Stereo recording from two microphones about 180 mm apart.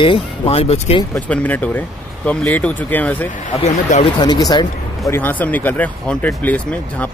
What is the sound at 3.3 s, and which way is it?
Speech, 40° left (ahead or behind).